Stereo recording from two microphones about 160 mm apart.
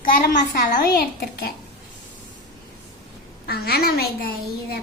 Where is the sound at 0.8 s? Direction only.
70° left (ahead or behind).